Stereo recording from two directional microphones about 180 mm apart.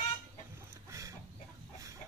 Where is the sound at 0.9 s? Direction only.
15° right (ahead or behind).